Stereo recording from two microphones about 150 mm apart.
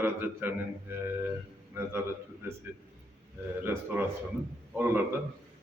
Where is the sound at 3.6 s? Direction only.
15° right (ahead or behind).